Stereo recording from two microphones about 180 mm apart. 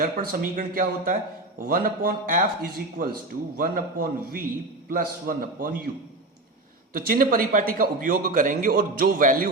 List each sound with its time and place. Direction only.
0.0 s a man's voice: 55° right (ahead or behind)
6.9 s a man's voice: 50° right (ahead or behind)